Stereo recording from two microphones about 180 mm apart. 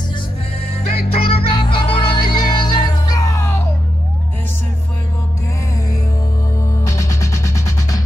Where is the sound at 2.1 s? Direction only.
25° left (ahead or behind).